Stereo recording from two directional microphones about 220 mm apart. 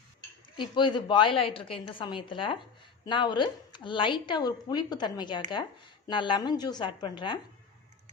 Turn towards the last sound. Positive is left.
turn(degrees=20)  # may be behind; listen again after turning